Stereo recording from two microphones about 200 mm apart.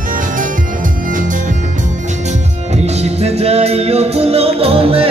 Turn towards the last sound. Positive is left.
turn(degrees=-30)  # may be behind; listen again after turning